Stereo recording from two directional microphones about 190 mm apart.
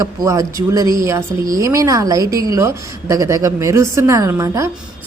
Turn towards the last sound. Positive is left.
turn(degrees=-15)  # may be behind; listen again after turning